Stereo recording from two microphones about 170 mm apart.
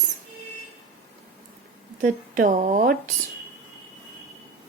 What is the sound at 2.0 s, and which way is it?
Speech, 55° right (ahead or behind).